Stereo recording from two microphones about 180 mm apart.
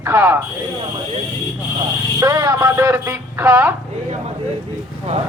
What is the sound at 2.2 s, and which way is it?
A man's voice, 20° right (ahead or behind).